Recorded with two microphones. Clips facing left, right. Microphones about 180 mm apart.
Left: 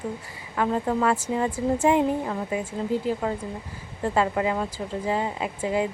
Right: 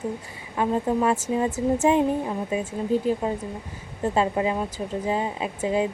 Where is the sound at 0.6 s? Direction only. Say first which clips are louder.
Right 1 dB; 15° right (ahead or behind).